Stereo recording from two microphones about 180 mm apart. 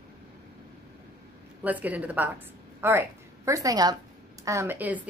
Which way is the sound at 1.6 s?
10° right (ahead or behind).